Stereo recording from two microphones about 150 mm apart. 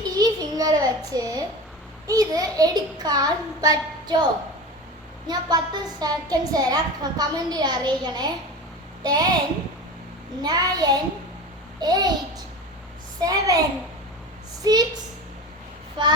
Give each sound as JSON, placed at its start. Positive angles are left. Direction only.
{"t": 0.0, "sound": "a sound", "side_deg": -25}
{"t": 2.0, "sound": "a woman's voice", "side_deg": -25}
{"t": 5.3, "sound": "a woman's voice", "side_deg": -25}
{"t": 10.4, "sound": "a woman's voice", "side_deg": -25}
{"t": 13.1, "sound": "a woman's voice", "side_deg": -25}
{"t": 14.6, "sound": "a woman's voice", "side_deg": -25}